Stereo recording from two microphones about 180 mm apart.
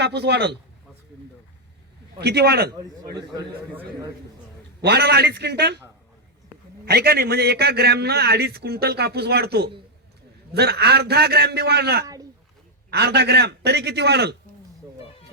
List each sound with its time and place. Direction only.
0.0 s a man's voice: 70° right (ahead or behind)
2.2 s a man's voice: 65° right (ahead or behind)
2.7 s a man's voice: 25° right (ahead or behind)
4.8 s a man's voice: 65° right (ahead or behind)
6.8 s a man's voice: 60° right (ahead or behind)